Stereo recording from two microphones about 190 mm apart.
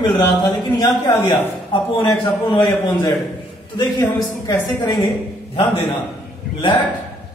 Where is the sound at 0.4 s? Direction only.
20° left (ahead or behind).